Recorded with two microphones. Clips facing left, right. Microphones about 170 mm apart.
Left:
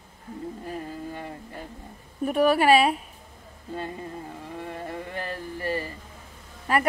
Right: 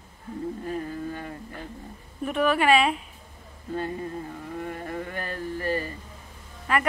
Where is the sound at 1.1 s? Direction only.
25° left (ahead or behind).